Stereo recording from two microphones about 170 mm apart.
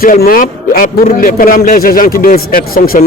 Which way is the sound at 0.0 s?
60° left (ahead or behind).